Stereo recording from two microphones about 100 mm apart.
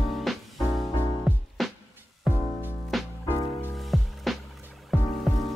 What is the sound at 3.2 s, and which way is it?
Music, 25° left (ahead or behind).